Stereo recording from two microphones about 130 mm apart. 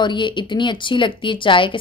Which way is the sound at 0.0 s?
35° left (ahead or behind).